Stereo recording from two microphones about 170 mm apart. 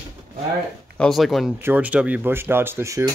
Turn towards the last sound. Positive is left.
turn(degrees=-15)  # may be behind; listen again after turning